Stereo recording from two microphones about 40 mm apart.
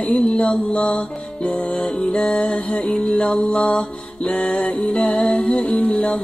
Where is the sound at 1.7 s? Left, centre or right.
Centre.